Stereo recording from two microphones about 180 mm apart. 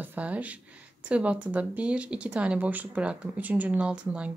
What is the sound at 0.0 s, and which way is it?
Speech, 10° right (ahead or behind).